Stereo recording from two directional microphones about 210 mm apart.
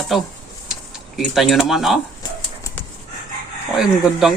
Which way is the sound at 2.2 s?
15° left (ahead or behind).